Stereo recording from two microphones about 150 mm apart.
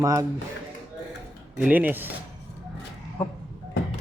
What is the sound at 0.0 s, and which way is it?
Speech, 20° right (ahead or behind).